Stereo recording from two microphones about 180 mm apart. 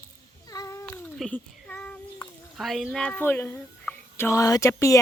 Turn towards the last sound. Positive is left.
turn(degrees=15)  # may be behind; listen again after turning